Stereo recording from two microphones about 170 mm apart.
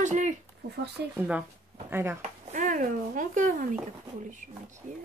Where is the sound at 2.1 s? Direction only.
50° right (ahead or behind).